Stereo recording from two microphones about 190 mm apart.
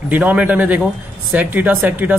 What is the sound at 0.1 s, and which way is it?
A woman's voice, 10° right (ahead or behind).